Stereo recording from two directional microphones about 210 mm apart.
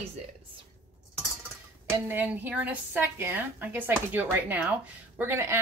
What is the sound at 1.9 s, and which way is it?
A woman's voice, 10° right (ahead or behind).